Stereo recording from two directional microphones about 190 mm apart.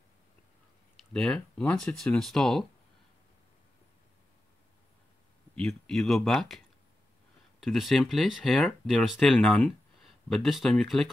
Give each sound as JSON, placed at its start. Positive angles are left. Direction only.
{"t": 1.1, "sound": "speech", "side_deg": 5}
{"t": 5.6, "sound": "speech", "side_deg": 0}
{"t": 7.6, "sound": "speech", "side_deg": 0}